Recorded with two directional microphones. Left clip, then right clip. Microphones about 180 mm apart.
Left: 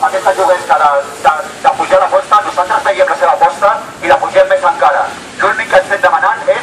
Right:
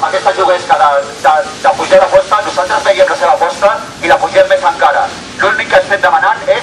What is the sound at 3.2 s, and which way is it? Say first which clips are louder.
Radio: even; centre (ahead or behind).